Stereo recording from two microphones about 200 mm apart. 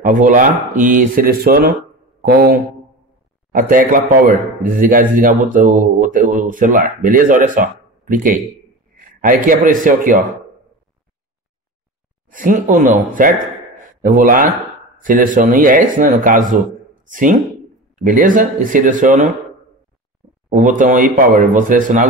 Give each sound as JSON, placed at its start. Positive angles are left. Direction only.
{"t": 0.0, "sound": "a man's voice", "side_deg": -40}
{"t": 12.3, "sound": "a man's voice", "side_deg": -40}
{"t": 20.4, "sound": "a man's voice", "side_deg": -40}